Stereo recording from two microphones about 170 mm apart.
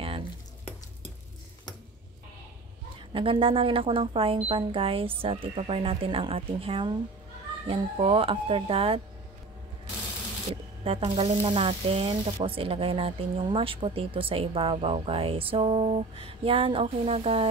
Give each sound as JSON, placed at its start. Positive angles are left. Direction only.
{"t": 0.0, "sound": "a sound", "side_deg": -35}
{"t": 3.1, "sound": "speech", "side_deg": -30}
{"t": 10.5, "sound": "speech", "side_deg": -35}